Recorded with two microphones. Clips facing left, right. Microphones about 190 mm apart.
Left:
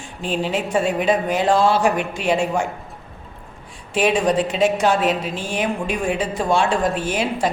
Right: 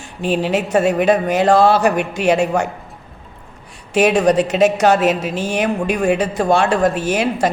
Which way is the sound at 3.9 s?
70° right (ahead or behind).